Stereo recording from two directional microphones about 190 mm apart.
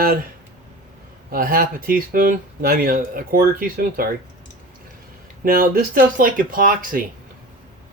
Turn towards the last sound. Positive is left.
turn(degrees=-45)  # may be behind; listen again after turning